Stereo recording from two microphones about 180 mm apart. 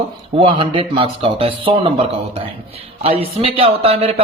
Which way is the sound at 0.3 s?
30° right (ahead or behind).